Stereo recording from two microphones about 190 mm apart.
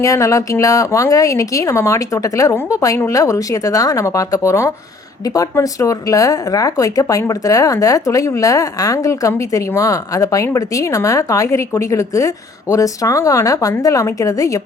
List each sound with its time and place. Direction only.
0.0 s a woman's voice: 15° left (ahead or behind)